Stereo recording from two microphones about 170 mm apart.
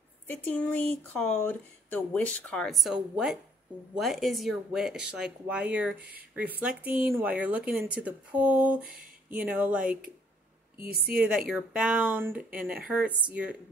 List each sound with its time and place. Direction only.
0.3 s speech: 10° left (ahead or behind)
10.8 s a woman's voice: 60° right (ahead or behind)
11.1 s speech: 5° right (ahead or behind)